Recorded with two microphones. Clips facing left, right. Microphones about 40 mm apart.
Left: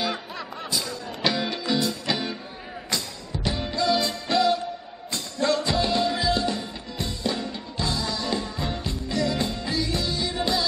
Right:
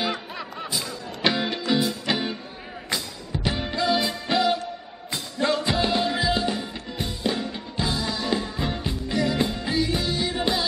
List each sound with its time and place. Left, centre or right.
0.0 s music: centre
3.4 s music: centre